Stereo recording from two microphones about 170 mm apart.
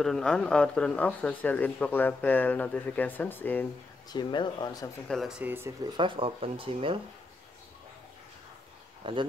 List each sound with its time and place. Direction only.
0.0 s speech: 5° left (ahead or behind)
4.1 s speech: 25° left (ahead or behind)
5.0 s speech: centre (ahead or behind)
5.9 s speech: 30° right (ahead or behind)
9.0 s speech: 30° right (ahead or behind)